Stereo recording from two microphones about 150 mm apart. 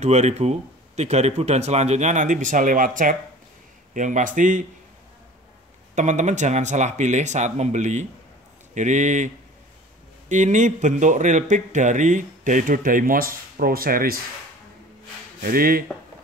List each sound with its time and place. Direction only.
0.0 s a man's voice: 50° right (ahead or behind)
5.9 s a man's voice: 55° right (ahead or behind); by 14.2 s 80° right
15.4 s speech: 75° right (ahead or behind)